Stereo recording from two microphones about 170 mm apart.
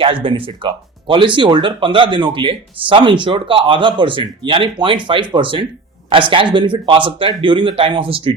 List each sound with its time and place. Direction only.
0.0 s speech: 30° right (ahead or behind)